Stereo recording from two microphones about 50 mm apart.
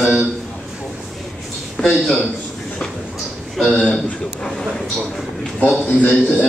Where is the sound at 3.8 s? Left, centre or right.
Left.